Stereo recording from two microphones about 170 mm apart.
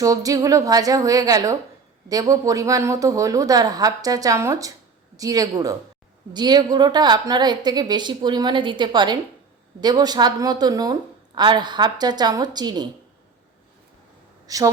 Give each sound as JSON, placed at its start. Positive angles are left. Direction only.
{"t": 0.0, "sound": "a woman's voice", "side_deg": -20}
{"t": 14.4, "sound": "speech", "side_deg": -20}